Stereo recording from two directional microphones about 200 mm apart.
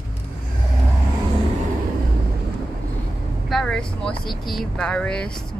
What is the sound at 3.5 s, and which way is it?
Vehicle, 5° left (ahead or behind).